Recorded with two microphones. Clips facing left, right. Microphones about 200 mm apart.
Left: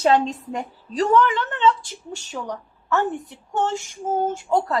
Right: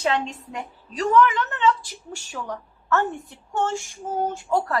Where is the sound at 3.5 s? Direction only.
20° left (ahead or behind).